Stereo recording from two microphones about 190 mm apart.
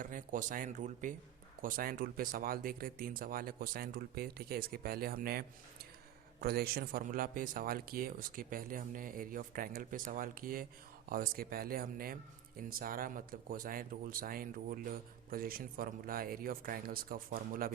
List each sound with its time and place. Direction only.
0.0 s speech: 45° right (ahead or behind)